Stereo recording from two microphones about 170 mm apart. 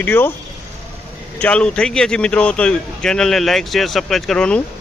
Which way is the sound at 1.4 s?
5° left (ahead or behind).